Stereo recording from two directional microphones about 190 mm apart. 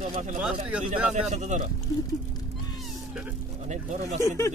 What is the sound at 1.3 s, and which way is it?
Speech, 40° right (ahead or behind).